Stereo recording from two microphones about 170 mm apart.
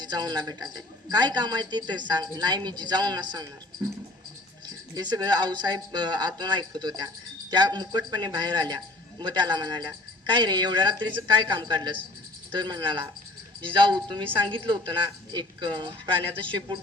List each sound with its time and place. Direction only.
0.0 s speech: 25° right (ahead or behind)
4.9 s speech: 25° right (ahead or behind)